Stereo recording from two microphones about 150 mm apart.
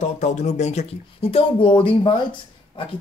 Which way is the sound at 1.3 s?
35° left (ahead or behind).